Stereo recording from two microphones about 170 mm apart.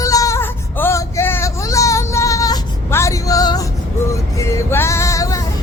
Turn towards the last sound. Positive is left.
turn(degrees=20)  # may be behind; listen again after turning